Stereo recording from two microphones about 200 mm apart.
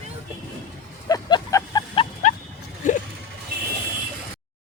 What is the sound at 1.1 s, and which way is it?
Vehicle, 20° left (ahead or behind).